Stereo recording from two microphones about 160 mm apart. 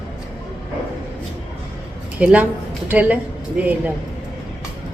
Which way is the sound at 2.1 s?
10° right (ahead or behind).